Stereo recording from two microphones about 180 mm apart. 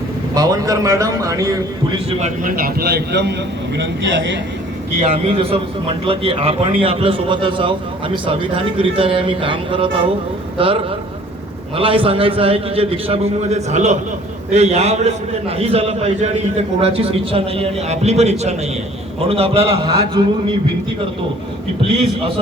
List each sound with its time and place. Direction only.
0.3 s a man's voice: 20° right (ahead or behind)
2.0 s a man's voice: 40° right (ahead or behind); by 3.3 s 70° right (ahead or behind)
3.8 s a man's voice: 90° right
5.1 s a man's voice: 35° right (ahead or behind)
21.8 s a man's voice: 30° right (ahead or behind)